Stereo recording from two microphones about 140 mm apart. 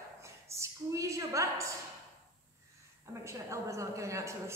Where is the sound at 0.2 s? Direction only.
20° right (ahead or behind).